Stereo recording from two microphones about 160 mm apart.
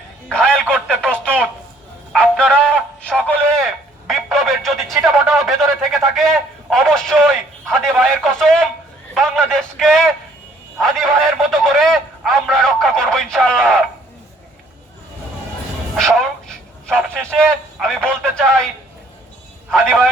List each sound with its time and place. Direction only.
0.3 s speech: 5° left (ahead or behind)
2.1 s music: 5° left (ahead or behind)
4.0 s speech: centre (ahead or behind)
16.0 s speech: centre (ahead or behind)